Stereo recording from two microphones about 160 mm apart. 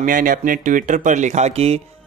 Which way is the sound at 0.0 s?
60° right (ahead or behind).